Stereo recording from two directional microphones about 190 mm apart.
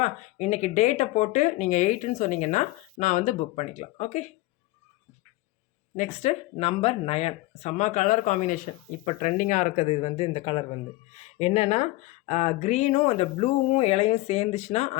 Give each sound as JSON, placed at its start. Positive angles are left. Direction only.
{"t": 0.0, "sound": "speech", "side_deg": 35}
{"t": 6.0, "sound": "speech", "side_deg": 35}